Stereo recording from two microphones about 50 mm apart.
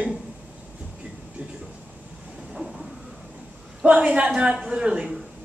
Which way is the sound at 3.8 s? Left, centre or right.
Right.